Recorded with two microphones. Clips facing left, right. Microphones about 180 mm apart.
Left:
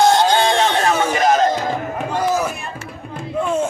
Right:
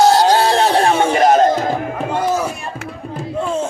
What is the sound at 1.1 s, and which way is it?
Music, 50° right (ahead or behind).